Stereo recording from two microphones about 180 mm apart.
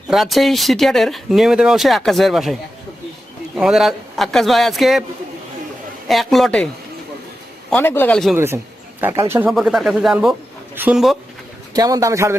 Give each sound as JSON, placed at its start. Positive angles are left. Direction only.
{"t": 0.1, "sound": "speech", "side_deg": 0}
{"t": 6.1, "sound": "speech", "side_deg": 0}
{"t": 7.7, "sound": "a man's voice", "side_deg": 10}
{"t": 9.0, "sound": "a man's voice", "side_deg": -10}
{"t": 9.5, "sound": "speech", "side_deg": 0}
{"t": 11.7, "sound": "a man's voice", "side_deg": -20}